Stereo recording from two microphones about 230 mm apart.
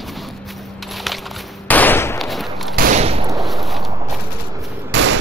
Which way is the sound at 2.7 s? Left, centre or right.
Right.